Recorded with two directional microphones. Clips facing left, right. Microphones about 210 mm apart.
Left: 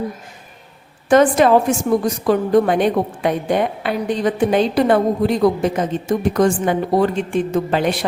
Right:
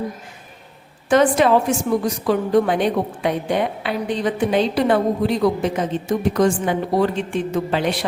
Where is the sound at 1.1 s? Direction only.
45° left (ahead or behind).